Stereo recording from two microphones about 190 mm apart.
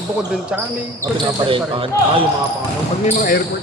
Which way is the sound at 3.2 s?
45° left (ahead or behind).